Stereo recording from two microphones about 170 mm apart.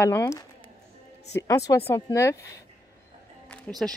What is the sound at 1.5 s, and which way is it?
Speech, 20° left (ahead or behind).